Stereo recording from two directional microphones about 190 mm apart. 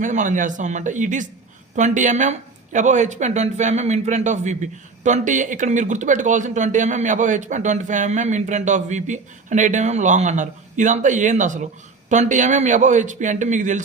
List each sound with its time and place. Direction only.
0.0 s speech: 40° right (ahead or behind)